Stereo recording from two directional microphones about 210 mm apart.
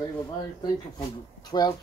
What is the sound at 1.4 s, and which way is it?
Speech, 20° left (ahead or behind).